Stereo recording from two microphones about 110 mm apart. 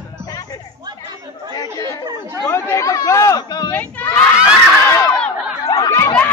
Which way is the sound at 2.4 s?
25° left (ahead or behind).